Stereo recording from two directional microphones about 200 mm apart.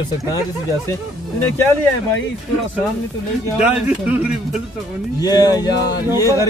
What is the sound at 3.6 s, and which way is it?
Speech, 5° right (ahead or behind).